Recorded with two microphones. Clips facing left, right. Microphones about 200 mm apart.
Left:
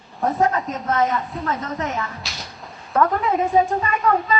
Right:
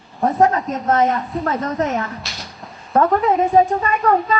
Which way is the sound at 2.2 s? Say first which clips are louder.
Right 1 dB; centre (ahead or behind).